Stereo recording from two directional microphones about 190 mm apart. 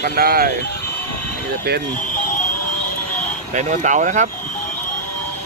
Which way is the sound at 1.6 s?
55° right (ahead or behind).